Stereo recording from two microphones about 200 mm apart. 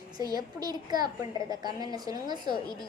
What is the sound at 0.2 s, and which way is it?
A child's voice, 20° right (ahead or behind).